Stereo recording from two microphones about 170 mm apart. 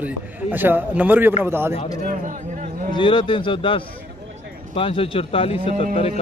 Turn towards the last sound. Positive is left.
turn(degrees=35)  # may be behind; listen again after turning